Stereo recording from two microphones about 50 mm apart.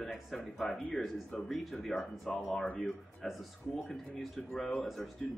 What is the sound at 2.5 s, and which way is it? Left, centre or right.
Speech, left.